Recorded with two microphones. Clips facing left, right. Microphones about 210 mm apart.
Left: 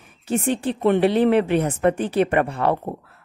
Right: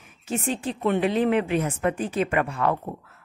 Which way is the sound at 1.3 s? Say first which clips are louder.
Left 4 dB; 35° left (ahead or behind).